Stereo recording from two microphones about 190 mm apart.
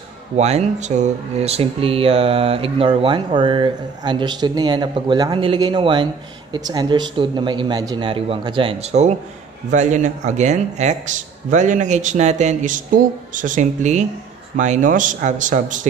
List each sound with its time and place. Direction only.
0.4 s speech: 35° right (ahead or behind)